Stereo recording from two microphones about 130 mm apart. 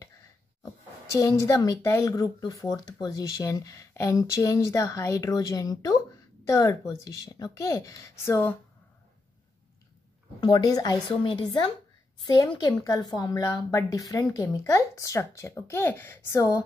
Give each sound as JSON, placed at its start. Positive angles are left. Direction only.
{"t": 1.2, "sound": "speech", "side_deg": 25}
{"t": 10.4, "sound": "a woman's voice", "side_deg": 35}
{"t": 11.2, "sound": "a woman's voice", "side_deg": 40}
{"t": 12.6, "sound": "speech", "side_deg": 25}